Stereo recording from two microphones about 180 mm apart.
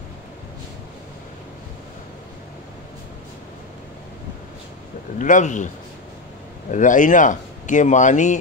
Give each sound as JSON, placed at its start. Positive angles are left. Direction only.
{"t": 5.2, "sound": "speech", "side_deg": 45}
{"t": 6.7, "sound": "speech", "side_deg": 45}